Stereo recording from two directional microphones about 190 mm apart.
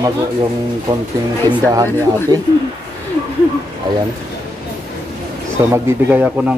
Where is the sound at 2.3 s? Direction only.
20° right (ahead or behind).